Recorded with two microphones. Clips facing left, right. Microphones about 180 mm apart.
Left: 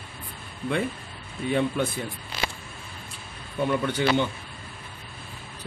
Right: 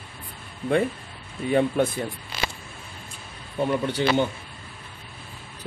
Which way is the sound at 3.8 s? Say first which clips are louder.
Right 2 dB; 35° right (ahead or behind).